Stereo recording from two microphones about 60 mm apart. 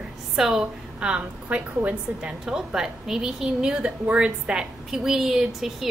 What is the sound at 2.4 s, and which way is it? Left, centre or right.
A woman's voice, centre.